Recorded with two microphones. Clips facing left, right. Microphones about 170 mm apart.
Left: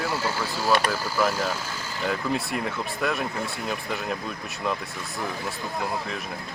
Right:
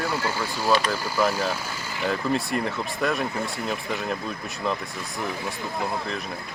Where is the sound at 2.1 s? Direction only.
Centre (ahead or behind).